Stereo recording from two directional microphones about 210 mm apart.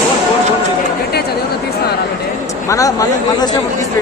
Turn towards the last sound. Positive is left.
turn(degrees=15)  # may be behind; listen again after turning